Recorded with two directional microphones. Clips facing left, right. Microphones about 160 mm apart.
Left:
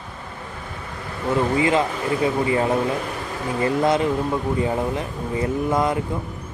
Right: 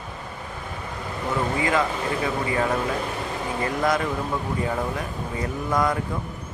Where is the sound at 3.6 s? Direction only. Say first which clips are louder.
Left 5 dB; 25° left (ahead or behind).